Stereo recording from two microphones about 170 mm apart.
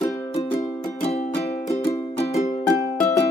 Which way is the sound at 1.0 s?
40° left (ahead or behind).